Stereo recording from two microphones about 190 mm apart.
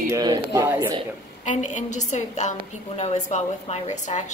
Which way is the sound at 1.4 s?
40° left (ahead or behind).